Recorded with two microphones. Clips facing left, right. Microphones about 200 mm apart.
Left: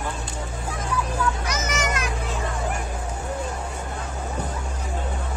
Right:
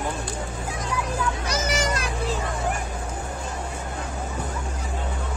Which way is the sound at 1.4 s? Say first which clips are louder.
Right 1 dB; 35° right (ahead or behind).